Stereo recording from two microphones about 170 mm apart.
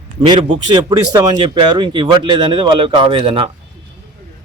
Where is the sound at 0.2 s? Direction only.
30° right (ahead or behind).